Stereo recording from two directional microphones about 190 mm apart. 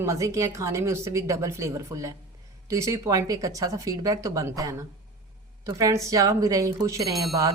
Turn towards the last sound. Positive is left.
turn(degrees=0)  # may be behind; listen again after turning